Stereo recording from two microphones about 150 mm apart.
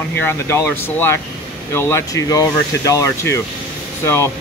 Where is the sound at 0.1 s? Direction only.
15° left (ahead or behind).